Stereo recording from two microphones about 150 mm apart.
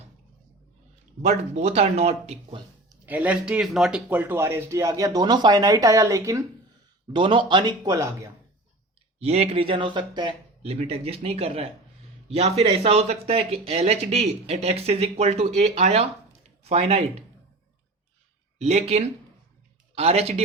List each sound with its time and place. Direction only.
1.2 s speech: 50° right (ahead or behind)
3.1 s speech: 10° right (ahead or behind)
4.1 s speech: 15° right (ahead or behind)
7.1 s speech: 35° right (ahead or behind)
9.1 s speech: 45° right (ahead or behind)
10.6 s speech: 45° right (ahead or behind)
18.6 s speech: 45° right (ahead or behind)